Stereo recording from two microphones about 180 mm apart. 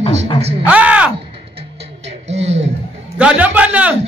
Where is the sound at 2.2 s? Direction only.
35° right (ahead or behind).